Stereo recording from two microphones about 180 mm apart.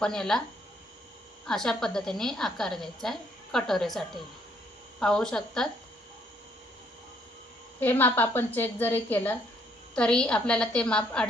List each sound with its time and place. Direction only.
0.0 s a woman's voice: 5° left (ahead or behind)
1.5 s a woman's voice: 5° left (ahead or behind)
7.8 s a woman's voice: 10° left (ahead or behind)